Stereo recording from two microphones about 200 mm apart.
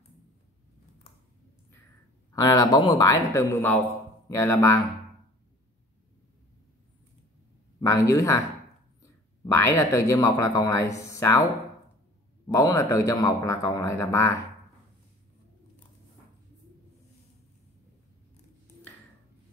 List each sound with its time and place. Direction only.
2.3 s speech: 20° left (ahead or behind)
7.8 s speech: 15° left (ahead or behind)
9.4 s speech: 10° left (ahead or behind)
12.4 s speech: 15° left (ahead or behind)